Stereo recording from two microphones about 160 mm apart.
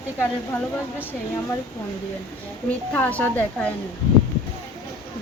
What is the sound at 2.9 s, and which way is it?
Speech, 10° left (ahead or behind).